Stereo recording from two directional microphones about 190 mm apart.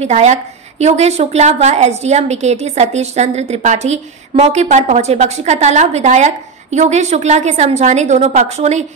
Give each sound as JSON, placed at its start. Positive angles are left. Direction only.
{"t": 0.0, "sound": "a woman's voice", "side_deg": -35}